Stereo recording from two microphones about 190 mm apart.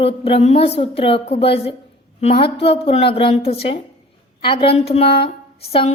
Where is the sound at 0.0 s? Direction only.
30° left (ahead or behind).